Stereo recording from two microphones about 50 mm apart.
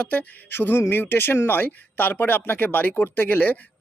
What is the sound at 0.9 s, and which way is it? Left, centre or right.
Speech, left.